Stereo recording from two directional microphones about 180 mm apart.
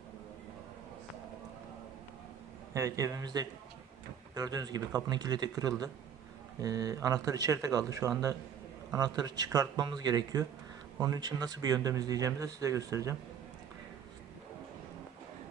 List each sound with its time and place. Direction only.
2.7 s speech: 15° right (ahead or behind)